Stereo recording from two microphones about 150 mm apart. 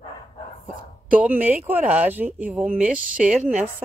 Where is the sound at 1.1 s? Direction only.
10° right (ahead or behind).